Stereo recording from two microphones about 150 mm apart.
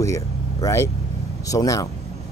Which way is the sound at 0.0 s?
20° left (ahead or behind).